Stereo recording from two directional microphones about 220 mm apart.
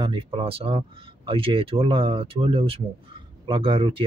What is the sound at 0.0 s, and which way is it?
Speech, 25° right (ahead or behind).